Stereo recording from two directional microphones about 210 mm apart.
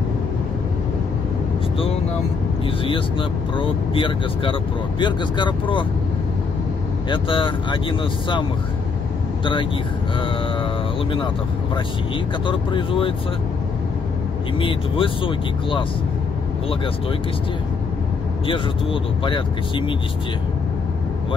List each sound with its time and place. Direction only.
2.8 s speech: 25° left (ahead or behind)
7.1 s speech: 25° left (ahead or behind)
9.4 s speech: 25° left (ahead or behind)
12.4 s speech: 25° left (ahead or behind)
14.6 s speech: 25° left (ahead or behind)
18.5 s speech: 25° left (ahead or behind)